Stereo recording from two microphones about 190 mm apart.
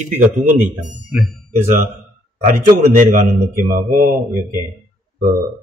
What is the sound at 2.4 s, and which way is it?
A man's voice, 45° right (ahead or behind).